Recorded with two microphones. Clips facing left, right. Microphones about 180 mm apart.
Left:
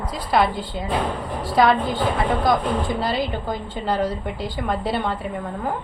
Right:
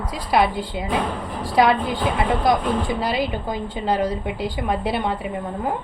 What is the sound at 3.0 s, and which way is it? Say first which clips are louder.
A woman's voice: right 1 dB; 10° right (ahead or behind).